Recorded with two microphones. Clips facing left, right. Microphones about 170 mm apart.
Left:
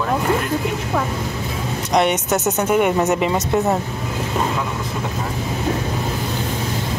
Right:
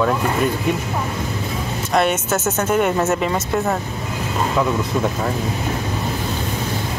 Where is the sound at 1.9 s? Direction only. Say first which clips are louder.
Left 1 dB; 15° left (ahead or behind).